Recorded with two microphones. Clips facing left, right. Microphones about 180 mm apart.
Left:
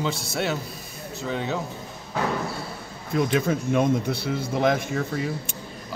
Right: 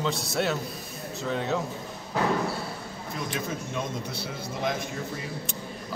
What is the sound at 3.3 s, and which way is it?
Speech, 60° left (ahead or behind).